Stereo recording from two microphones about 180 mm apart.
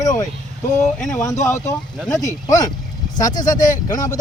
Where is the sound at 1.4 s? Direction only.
15° left (ahead or behind).